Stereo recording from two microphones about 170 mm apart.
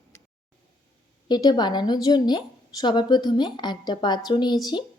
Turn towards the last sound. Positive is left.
turn(degrees=25)  # may be behind; listen again after turning